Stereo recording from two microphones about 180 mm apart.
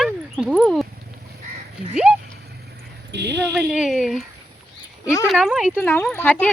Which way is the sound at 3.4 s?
5° right (ahead or behind).